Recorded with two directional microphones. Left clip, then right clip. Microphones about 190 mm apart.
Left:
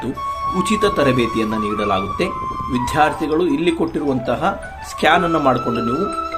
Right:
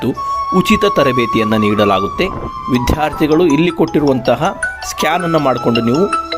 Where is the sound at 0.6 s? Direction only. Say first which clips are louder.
Right 4 dB; 45° right (ahead or behind).